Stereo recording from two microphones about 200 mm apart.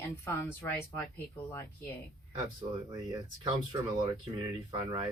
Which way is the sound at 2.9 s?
20° right (ahead or behind).